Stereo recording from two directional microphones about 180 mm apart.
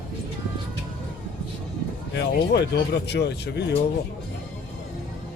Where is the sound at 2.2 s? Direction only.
70° left (ahead or behind).